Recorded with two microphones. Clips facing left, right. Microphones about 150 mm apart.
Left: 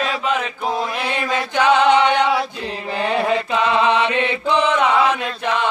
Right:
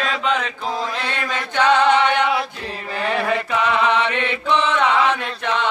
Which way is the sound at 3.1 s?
20° left (ahead or behind).